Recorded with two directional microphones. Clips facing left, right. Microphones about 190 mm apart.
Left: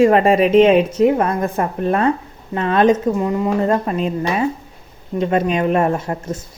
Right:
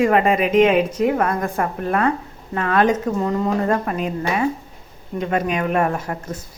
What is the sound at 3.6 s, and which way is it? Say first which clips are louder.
A woman's voice: left 3 dB; 25° left (ahead or behind).